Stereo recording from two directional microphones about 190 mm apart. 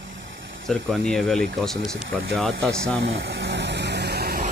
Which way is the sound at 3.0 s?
70° right (ahead or behind).